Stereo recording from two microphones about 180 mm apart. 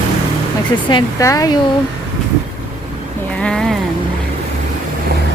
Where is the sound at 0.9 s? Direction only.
20° left (ahead or behind).